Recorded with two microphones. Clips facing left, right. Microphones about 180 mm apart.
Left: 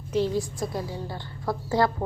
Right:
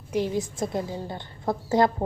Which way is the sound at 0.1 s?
15° right (ahead or behind).